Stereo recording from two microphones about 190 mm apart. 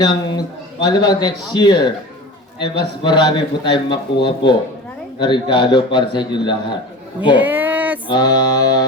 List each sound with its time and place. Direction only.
0.0 s a man's voice: 20° left (ahead or behind)
7.3 s a sound: 10° right (ahead or behind)
8.0 s a man's voice: 20° left (ahead or behind)